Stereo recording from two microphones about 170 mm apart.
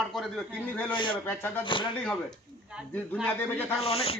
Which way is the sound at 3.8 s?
35° left (ahead or behind).